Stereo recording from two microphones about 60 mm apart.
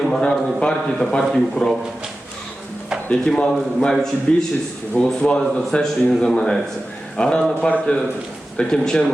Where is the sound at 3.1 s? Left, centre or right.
Centre.